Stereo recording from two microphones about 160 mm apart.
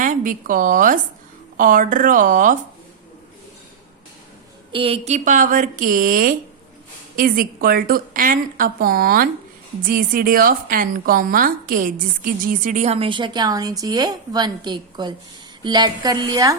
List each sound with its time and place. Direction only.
0.0 s a woman's voice: 55° right (ahead or behind)
4.7 s a woman's voice: 35° right (ahead or behind)